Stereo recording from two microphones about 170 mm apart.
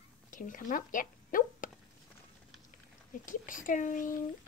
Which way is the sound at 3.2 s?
50° left (ahead or behind).